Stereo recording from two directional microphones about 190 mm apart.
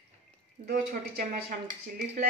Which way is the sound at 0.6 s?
50° right (ahead or behind).